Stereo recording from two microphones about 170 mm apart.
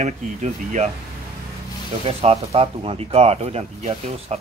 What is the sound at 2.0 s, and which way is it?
Speech, 35° right (ahead or behind).